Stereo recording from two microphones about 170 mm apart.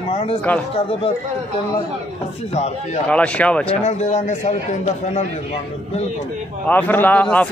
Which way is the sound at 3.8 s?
45° left (ahead or behind).